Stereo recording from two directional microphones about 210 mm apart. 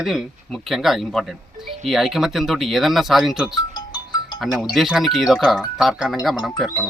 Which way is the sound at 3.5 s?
20° left (ahead or behind).